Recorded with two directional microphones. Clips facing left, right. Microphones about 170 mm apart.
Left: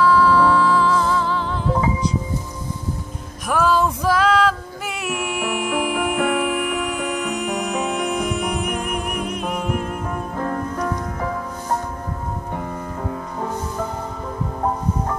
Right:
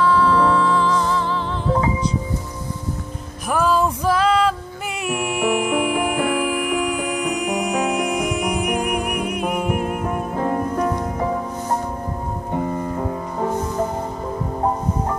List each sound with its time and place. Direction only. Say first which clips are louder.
0.0 s music: left 1 dB; 5° left (ahead or behind)
3.4 s music: even; 5° right (ahead or behind)
10.4 s music: right 4 dB; 20° right (ahead or behind)